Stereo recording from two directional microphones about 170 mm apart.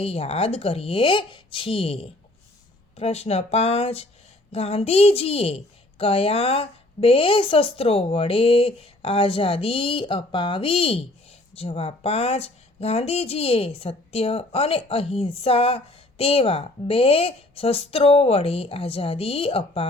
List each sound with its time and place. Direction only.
0.0 s speech: 35° left (ahead or behind)